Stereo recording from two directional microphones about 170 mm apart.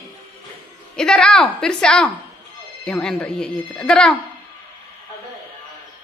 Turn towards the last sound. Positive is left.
turn(degrees=5)  # may be behind; listen again after turning